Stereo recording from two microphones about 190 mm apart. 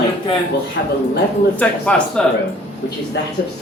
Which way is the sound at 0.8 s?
65° left (ahead or behind).